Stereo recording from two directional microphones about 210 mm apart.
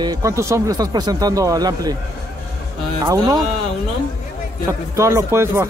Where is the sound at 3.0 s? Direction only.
15° right (ahead or behind).